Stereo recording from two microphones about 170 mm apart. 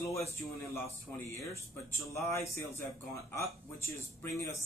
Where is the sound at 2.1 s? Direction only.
15° left (ahead or behind).